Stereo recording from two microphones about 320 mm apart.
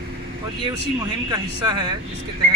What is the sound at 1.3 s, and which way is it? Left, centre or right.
Speech, centre.